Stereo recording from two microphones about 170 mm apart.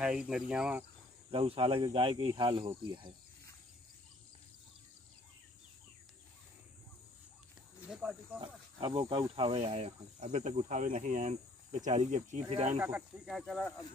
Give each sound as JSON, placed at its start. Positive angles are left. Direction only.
{"t": 0.0, "sound": "speech", "side_deg": -5}
{"t": 1.3, "sound": "speech", "side_deg": -30}
{"t": 7.9, "sound": "speech", "side_deg": -5}
{"t": 8.4, "sound": "speech", "side_deg": -30}
{"t": 12.7, "sound": "speech", "side_deg": -10}